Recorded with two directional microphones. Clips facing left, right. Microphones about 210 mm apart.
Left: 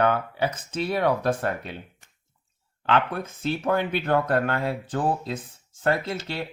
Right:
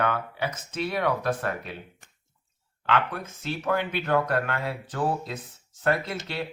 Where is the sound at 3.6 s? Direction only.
35° left (ahead or behind).